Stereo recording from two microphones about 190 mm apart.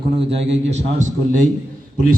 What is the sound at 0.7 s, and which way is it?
Speech, 40° right (ahead or behind).